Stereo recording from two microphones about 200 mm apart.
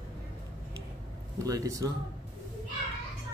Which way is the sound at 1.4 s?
15° right (ahead or behind).